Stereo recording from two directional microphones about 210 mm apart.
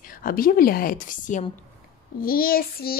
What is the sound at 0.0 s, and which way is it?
A child's voice, 40° left (ahead or behind).